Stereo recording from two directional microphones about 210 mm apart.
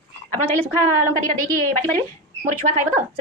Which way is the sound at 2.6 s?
35° right (ahead or behind).